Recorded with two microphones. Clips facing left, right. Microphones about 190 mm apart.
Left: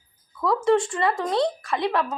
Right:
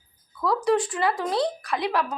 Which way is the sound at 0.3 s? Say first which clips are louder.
Left 2 dB; centre (ahead or behind).